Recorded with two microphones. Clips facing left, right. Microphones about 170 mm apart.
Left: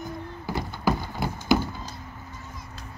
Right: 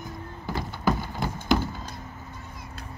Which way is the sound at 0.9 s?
5° left (ahead or behind).